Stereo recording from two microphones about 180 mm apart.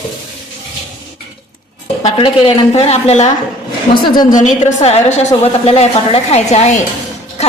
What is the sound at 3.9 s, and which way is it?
Speech, 25° left (ahead or behind).